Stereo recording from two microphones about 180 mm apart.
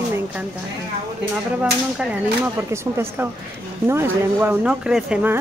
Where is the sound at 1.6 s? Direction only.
10° right (ahead or behind).